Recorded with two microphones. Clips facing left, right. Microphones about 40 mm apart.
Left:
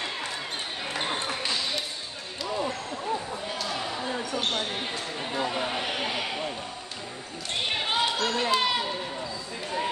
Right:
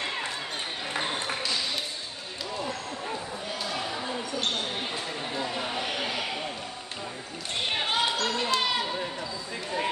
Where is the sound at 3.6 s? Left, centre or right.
Centre.